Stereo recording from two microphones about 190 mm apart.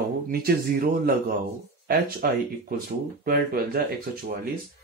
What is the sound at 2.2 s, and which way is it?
Speech, 50° right (ahead or behind).